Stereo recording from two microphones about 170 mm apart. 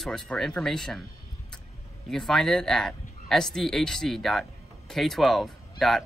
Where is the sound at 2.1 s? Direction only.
5° left (ahead or behind).